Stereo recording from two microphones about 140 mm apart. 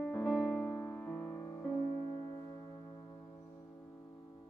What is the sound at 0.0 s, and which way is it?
Music, 10° left (ahead or behind).